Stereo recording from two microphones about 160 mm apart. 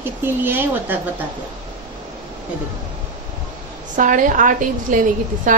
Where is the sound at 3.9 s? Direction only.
55° right (ahead or behind).